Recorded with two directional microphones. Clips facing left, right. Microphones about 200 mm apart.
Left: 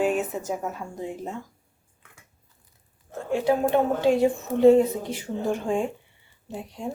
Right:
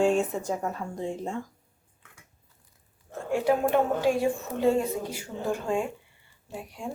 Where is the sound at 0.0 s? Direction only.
5° left (ahead or behind).